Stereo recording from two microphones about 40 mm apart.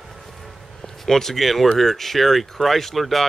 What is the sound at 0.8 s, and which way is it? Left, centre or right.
Speech, centre.